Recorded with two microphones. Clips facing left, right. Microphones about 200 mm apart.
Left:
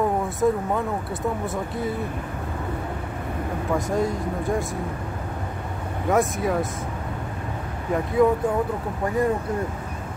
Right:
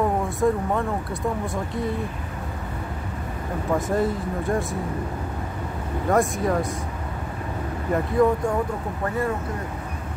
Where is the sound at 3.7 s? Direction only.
Centre (ahead or behind).